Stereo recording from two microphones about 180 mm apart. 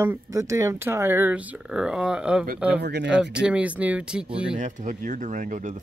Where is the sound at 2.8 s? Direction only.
70° right (ahead or behind).